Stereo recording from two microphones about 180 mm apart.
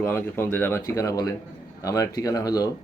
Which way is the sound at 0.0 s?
10° left (ahead or behind).